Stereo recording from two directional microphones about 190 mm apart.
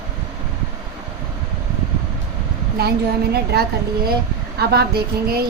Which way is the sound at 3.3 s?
55° right (ahead or behind).